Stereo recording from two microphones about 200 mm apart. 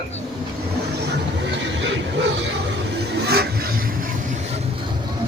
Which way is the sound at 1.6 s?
60° right (ahead or behind).